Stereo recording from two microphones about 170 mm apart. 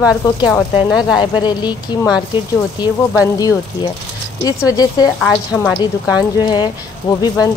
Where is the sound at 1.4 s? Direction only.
25° left (ahead or behind).